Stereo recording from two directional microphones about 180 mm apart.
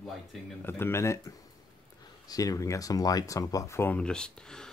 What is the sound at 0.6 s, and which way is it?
Speech, 10° left (ahead or behind).